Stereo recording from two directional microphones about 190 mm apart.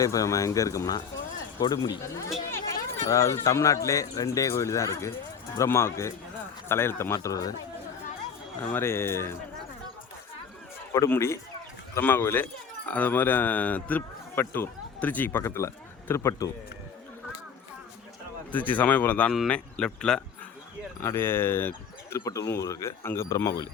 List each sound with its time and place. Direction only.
0.0 s speech: 15° left (ahead or behind)
8.6 s speech: 10° left (ahead or behind)
10.9 s speech: 15° left (ahead or behind)
18.5 s speech: 10° left (ahead or behind)